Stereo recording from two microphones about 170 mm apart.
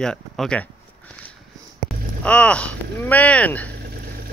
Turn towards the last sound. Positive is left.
turn(degrees=10)  # may be behind; listen again after turning